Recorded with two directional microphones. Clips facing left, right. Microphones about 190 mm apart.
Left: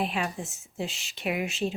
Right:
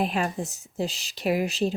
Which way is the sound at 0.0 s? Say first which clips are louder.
Right 4 dB; 40° right (ahead or behind).